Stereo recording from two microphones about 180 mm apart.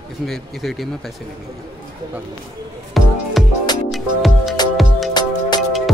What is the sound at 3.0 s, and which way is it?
Music, centre (ahead or behind).